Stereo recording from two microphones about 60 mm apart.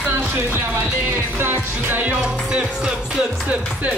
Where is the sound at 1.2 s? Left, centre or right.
Right.